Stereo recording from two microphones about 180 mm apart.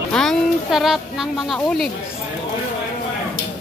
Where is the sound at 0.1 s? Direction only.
5° left (ahead or behind).